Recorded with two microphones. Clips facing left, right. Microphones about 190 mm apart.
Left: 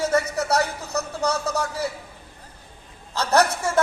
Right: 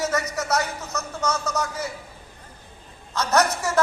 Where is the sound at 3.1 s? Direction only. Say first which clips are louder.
Left 1 dB; 30° left (ahead or behind).